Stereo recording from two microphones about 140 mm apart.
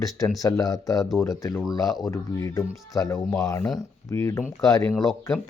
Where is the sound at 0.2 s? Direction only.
25° left (ahead or behind).